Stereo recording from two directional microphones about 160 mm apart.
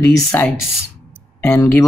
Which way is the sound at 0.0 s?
15° left (ahead or behind).